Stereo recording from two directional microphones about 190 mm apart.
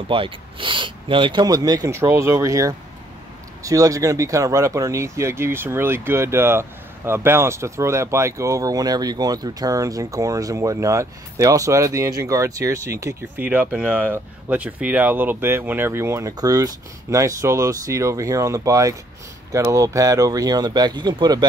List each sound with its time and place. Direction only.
0.1 s speech: 30° right (ahead or behind)